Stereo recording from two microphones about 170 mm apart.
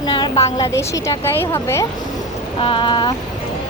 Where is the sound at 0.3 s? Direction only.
40° left (ahead or behind).